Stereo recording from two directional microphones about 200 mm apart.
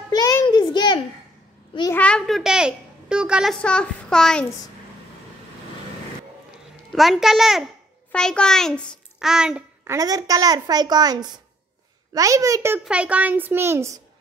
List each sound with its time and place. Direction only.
0.1 s a sound: 20° left (ahead or behind)
1.8 s a child's voice: 10° left (ahead or behind)
6.9 s a woman's voice: centre (ahead or behind)
9.8 s a child's voice: 20° right (ahead or behind)